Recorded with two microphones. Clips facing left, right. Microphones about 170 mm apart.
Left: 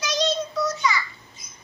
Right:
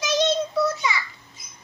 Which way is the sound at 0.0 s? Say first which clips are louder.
Right 3 dB; 25° right (ahead or behind).